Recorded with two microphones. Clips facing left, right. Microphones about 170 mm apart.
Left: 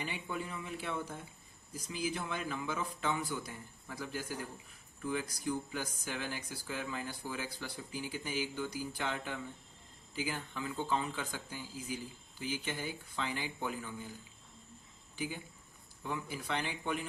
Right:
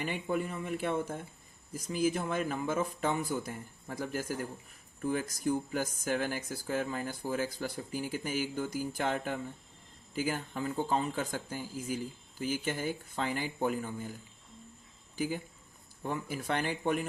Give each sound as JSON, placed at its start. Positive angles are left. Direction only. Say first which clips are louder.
{"t": 0.0, "sound": "speech", "louder": "right 7 dB", "side_deg": -45}
{"t": 15.1, "sound": "a sound", "louder": "right 6 dB", "side_deg": -40}
{"t": 16.0, "sound": "speech", "louder": "right 4 dB", "side_deg": -50}